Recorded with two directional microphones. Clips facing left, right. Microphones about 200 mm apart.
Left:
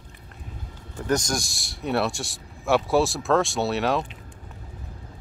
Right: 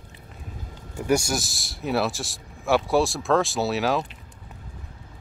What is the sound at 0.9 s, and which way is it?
Speech, 10° right (ahead or behind).